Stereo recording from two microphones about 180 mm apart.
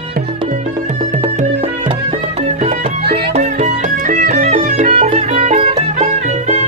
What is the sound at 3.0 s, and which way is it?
Music, 65° right (ahead or behind).